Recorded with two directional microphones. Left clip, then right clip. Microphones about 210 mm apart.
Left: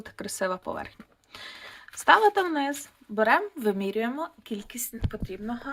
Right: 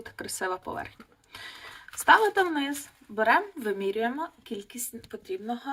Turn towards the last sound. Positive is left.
turn(degrees=40)  # may be behind; listen again after turning